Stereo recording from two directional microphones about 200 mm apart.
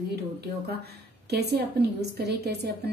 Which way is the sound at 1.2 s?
55° right (ahead or behind).